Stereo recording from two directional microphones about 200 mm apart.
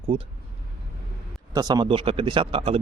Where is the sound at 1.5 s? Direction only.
20° right (ahead or behind).